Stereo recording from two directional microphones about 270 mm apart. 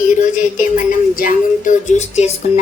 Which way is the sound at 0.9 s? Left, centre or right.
Left.